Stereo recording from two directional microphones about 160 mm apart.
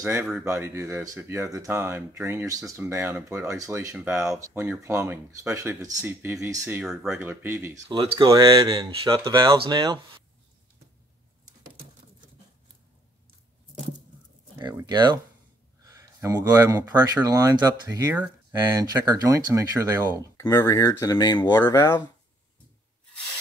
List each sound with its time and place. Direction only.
0.0 s speech: 15° right (ahead or behind)
6.8 s speech: 5° right (ahead or behind)
7.2 s speech: 15° right (ahead or behind)
7.9 s speech: 30° right (ahead or behind)
14.6 s speech: 25° right (ahead or behind)
20.2 s speech: 20° left (ahead or behind)